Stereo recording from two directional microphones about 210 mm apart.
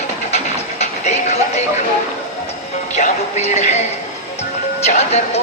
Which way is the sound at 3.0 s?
35° left (ahead or behind).